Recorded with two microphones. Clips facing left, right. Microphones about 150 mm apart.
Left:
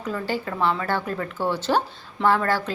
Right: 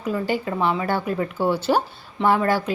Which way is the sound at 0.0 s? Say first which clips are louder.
Right 3 dB; 15° right (ahead or behind).